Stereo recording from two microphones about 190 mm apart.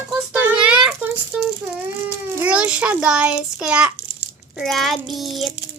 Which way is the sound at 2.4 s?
5° right (ahead or behind).